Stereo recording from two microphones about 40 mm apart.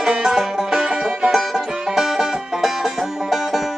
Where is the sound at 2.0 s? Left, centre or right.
Centre.